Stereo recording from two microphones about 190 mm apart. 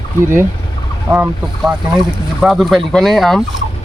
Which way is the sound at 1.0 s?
10° right (ahead or behind).